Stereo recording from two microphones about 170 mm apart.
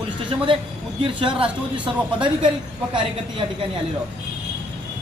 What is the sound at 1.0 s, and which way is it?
A man's voice, 30° right (ahead or behind).